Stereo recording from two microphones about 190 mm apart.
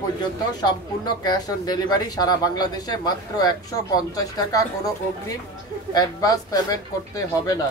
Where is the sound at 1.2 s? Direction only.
20° left (ahead or behind).